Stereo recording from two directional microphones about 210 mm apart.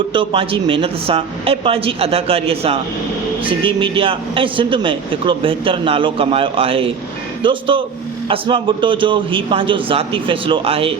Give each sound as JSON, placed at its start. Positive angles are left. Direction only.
{"t": 0.1, "sound": "a man's voice", "side_deg": -25}